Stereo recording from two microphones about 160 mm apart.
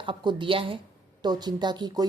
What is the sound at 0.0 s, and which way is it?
Speech, 30° right (ahead or behind).